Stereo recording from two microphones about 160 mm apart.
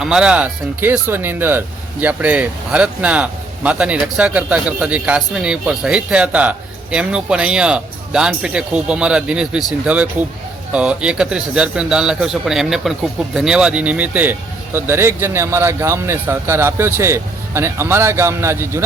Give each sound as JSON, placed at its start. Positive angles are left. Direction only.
{"t": 0.0, "sound": "a man's voice", "side_deg": -5}